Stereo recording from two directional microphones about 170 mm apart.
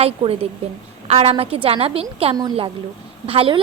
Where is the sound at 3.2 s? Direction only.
35° right (ahead or behind).